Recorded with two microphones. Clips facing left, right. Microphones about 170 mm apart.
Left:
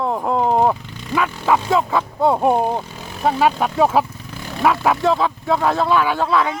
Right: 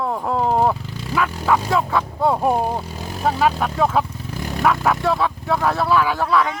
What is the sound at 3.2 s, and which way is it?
Speech, 10° left (ahead or behind).